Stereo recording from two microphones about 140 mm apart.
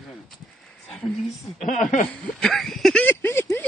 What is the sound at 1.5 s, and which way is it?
Speech, 65° left (ahead or behind).